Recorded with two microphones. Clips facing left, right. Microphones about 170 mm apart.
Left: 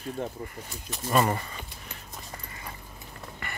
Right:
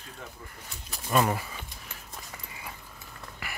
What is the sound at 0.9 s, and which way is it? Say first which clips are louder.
Speech: left 1 dB; centre (ahead or behind).